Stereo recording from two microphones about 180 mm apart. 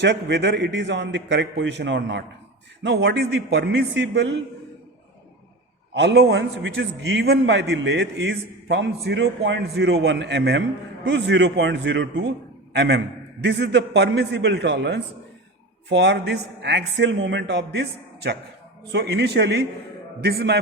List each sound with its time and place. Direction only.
0.0 s a man's voice: 75° right (ahead or behind)
5.9 s a man's voice: 70° right (ahead or behind)